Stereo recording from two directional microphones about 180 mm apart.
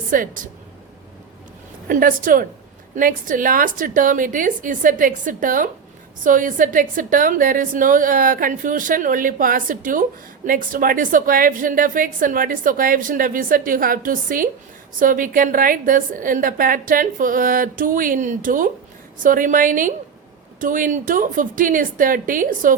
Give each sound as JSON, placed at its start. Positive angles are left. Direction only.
{"t": 0.1, "sound": "a woman's voice", "side_deg": -50}
{"t": 1.9, "sound": "a woman's voice", "side_deg": -50}